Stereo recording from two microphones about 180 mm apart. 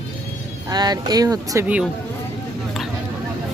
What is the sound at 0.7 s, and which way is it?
Speech, 20° right (ahead or behind).